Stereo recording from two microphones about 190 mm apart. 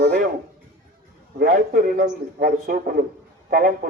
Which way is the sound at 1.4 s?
50° right (ahead or behind).